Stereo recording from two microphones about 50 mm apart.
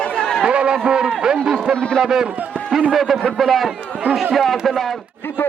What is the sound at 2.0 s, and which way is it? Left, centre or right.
A man's voice, centre.